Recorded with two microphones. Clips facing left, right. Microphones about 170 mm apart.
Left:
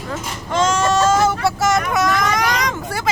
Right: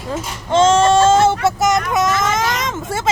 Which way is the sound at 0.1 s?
25° right (ahead or behind).